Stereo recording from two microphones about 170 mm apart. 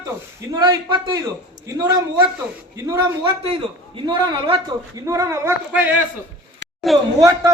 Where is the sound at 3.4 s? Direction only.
30° right (ahead or behind); by 5.9 s 15° right (ahead or behind).